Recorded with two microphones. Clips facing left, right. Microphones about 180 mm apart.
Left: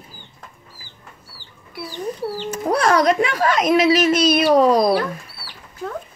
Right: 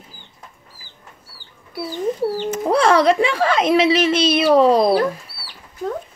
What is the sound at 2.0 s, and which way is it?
Speech, 20° right (ahead or behind).